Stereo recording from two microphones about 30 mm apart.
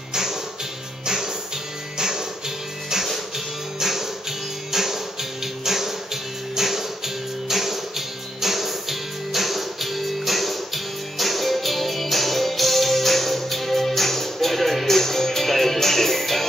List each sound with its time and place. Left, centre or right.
0.1 s music: centre
5.7 s music: centre